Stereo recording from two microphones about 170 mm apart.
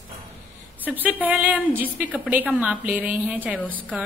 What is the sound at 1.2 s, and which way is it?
A woman's voice, 10° right (ahead or behind).